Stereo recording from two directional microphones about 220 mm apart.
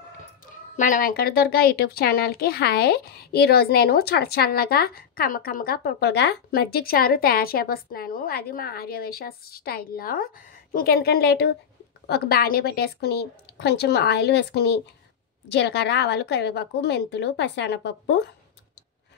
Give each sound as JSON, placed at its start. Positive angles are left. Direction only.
{"t": 0.7, "sound": "speech", "side_deg": 35}